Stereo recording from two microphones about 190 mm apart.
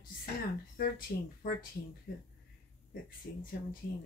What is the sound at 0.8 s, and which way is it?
Speech, 50° left (ahead or behind).